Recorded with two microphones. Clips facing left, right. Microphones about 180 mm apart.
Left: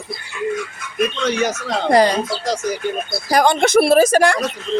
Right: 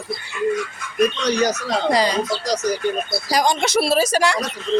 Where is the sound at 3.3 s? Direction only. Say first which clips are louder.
Left 5 dB; 55° left (ahead or behind).